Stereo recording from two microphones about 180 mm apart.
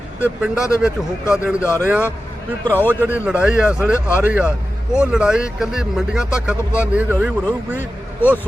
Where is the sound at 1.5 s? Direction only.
15° left (ahead or behind).